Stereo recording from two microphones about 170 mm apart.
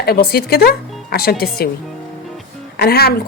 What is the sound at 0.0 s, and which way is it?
A woman's voice, 65° left (ahead or behind).